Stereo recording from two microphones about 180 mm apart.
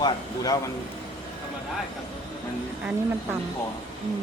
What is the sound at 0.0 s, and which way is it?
Speech, 20° left (ahead or behind).